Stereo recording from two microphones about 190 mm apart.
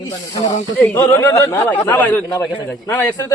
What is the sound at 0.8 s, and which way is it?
Speech, 10° left (ahead or behind).